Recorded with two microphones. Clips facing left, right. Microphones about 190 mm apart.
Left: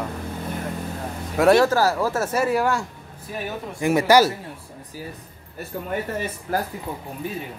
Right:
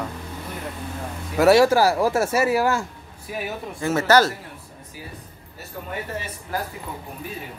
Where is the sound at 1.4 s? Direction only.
10° right (ahead or behind).